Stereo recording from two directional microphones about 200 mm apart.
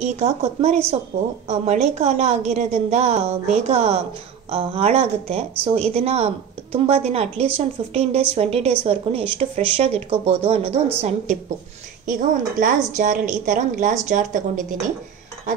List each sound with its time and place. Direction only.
0.0 s a woman's voice: 35° right (ahead or behind)